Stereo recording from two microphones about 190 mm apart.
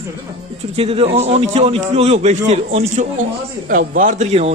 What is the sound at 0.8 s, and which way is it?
A man's voice, 30° right (ahead or behind).